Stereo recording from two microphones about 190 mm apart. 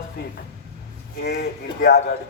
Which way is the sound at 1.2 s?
55° left (ahead or behind).